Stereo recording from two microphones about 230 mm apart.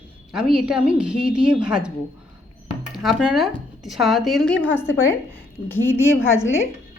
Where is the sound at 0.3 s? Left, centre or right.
Centre.